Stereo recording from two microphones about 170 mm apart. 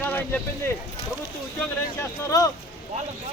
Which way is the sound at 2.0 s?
15° left (ahead or behind).